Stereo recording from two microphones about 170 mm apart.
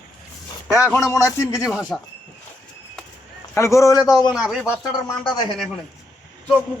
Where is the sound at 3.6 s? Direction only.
15° left (ahead or behind).